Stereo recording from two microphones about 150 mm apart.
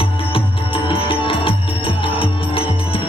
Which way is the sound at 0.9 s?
35° left (ahead or behind).